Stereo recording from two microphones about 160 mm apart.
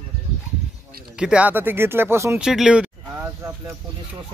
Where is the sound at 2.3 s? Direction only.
5° right (ahead or behind).